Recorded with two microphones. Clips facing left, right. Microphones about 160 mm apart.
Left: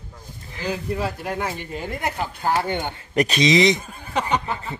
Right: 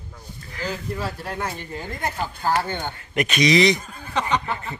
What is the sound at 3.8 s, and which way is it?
Speech, 10° left (ahead or behind).